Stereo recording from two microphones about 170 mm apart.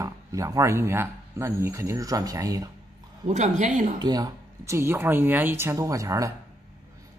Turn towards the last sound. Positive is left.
turn(degrees=-20)  # may be behind; listen again after turning